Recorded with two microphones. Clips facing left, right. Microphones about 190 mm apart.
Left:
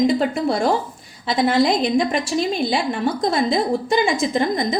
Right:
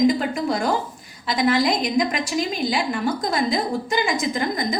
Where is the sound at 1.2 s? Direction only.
25° left (ahead or behind).